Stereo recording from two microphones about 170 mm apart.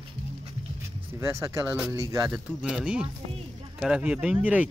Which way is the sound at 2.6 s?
5° right (ahead or behind).